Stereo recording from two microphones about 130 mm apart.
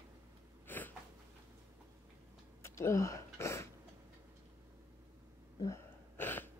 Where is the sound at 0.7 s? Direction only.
15° left (ahead or behind).